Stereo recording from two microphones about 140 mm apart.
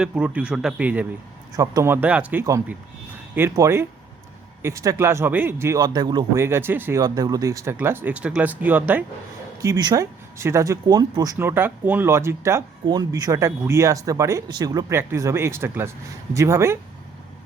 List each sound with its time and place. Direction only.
0.0 s speech: 10° right (ahead or behind)
1.5 s speech: 25° right (ahead or behind)
5.8 s speech: 30° right (ahead or behind)
6.4 s speech: 15° right (ahead or behind)
7.0 s speech: 25° right (ahead or behind); by 9.0 s 10° right (ahead or behind)
9.6 s speech: 25° right (ahead or behind)
11.3 s speech: 15° right (ahead or behind)